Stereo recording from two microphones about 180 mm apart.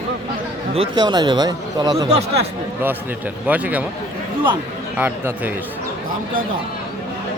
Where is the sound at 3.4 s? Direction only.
10° right (ahead or behind).